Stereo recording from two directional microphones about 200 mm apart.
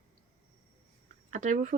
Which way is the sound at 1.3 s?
40° right (ahead or behind).